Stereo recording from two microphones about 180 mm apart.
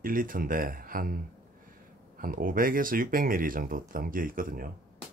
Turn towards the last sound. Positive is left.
turn(degrees=-50)  # may be behind; listen again after turning